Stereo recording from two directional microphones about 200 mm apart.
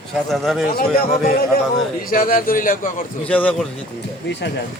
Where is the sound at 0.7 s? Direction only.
50° left (ahead or behind).